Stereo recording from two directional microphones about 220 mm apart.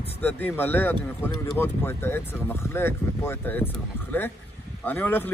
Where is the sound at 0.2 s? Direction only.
10° left (ahead or behind).